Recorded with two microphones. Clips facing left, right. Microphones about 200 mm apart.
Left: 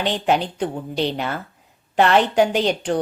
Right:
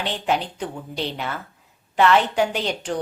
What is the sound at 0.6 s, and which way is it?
A woman's voice, 30° left (ahead or behind).